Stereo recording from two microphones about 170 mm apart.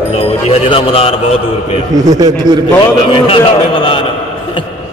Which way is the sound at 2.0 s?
20° right (ahead or behind).